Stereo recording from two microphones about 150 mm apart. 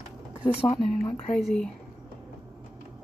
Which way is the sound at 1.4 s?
5° left (ahead or behind).